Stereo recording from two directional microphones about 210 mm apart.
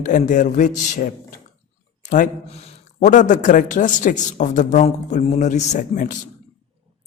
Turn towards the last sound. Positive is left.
turn(degrees=40)  # may be behind; listen again after turning